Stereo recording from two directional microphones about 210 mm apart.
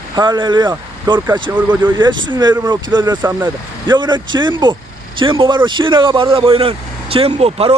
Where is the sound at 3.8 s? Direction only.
20° right (ahead or behind).